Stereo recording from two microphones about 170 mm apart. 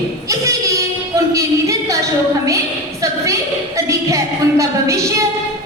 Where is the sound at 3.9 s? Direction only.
20° right (ahead or behind).